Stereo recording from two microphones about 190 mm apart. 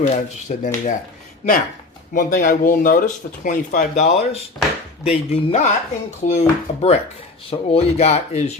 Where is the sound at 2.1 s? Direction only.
50° left (ahead or behind).